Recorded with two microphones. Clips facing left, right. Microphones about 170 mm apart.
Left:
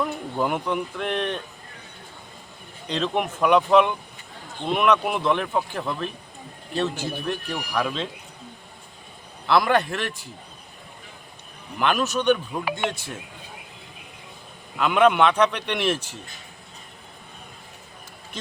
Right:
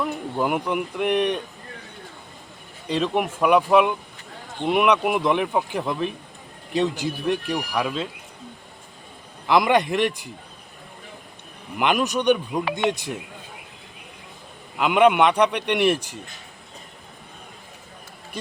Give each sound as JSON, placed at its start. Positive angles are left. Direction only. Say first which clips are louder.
{"t": 0.0, "sound": "speech", "louder": "right 1 dB", "side_deg": -5}
{"t": 2.8, "sound": "speech", "louder": "right 2 dB", "side_deg": -10}
{"t": 9.5, "sound": "speech", "louder": "right 2 dB", "side_deg": -15}
{"t": 11.8, "sound": "speech", "louder": "right 1 dB", "side_deg": -15}
{"t": 14.8, "sound": "speech", "louder": "right 1 dB", "side_deg": -15}